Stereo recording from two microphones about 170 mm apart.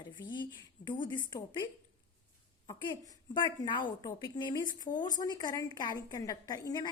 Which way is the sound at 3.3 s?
30° left (ahead or behind).